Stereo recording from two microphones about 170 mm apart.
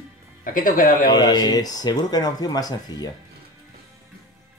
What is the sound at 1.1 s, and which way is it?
Speech, 25° left (ahead or behind).